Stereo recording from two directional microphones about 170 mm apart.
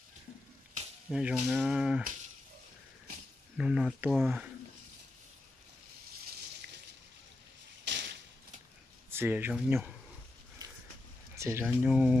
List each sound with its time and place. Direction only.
1.1 s cattle: 5° right (ahead or behind)
3.6 s cattle: 5° right (ahead or behind)
7.9 s a sound: 90° right
9.0 s speech: 15° right (ahead or behind)
11.3 s speech: 15° right (ahead or behind)